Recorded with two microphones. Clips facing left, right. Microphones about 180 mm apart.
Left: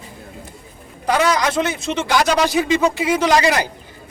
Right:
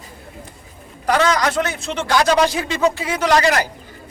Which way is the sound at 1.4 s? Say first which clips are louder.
Left 1 dB; 20° left (ahead or behind).